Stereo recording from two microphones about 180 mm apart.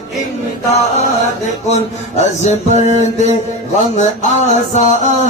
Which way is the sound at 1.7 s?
40° left (ahead or behind).